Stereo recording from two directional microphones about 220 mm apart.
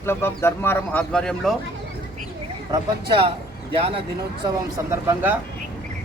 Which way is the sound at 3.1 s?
20° right (ahead or behind).